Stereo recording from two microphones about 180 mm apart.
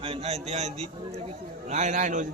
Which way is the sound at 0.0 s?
35° right (ahead or behind).